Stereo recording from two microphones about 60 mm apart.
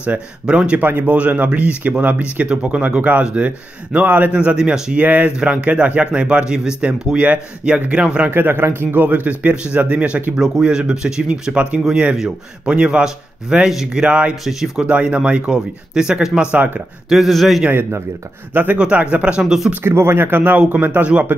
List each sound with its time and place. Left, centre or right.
0.0 s speech: right
4.6 s a man's voice: centre
4.9 s a man's voice: right
8.3 s a man's voice: right; by 14.0 s centre
14.0 s speech: centre
14.4 s a man's voice: centre
14.9 s a man's voice: centre
16.5 s speech: right
17.1 s speech: centre
18.5 s speech: right
18.8 s speech: centre
19.4 s speech: centre
19.7 s speech: right